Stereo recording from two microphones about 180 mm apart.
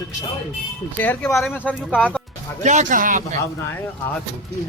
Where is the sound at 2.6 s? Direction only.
40° right (ahead or behind).